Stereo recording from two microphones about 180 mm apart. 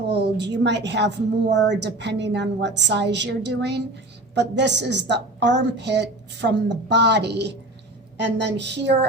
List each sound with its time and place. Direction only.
0.1 s a woman's voice: 70° right (ahead or behind)